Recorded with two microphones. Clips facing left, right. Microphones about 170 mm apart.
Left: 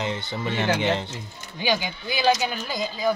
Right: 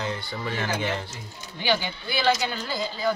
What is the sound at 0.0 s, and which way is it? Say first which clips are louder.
Speech: left 2 dB; 20° left (ahead or behind).